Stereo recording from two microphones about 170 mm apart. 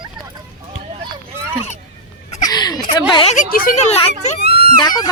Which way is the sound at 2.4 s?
20° left (ahead or behind).